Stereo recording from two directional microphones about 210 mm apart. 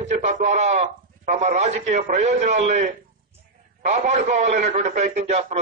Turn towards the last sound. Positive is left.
turn(degrees=-30)  # may be behind; listen again after turning